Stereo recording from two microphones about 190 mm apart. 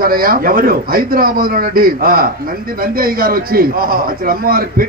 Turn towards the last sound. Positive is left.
turn(degrees=-50)  # may be behind; listen again after turning